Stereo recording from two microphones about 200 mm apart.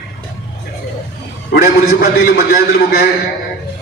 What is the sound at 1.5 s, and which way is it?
Speech, 50° left (ahead or behind).